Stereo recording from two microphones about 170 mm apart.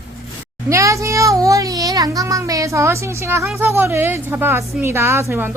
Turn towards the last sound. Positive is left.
turn(degrees=-15)  # may be behind; listen again after turning